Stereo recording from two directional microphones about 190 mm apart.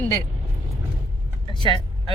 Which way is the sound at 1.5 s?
25° left (ahead or behind).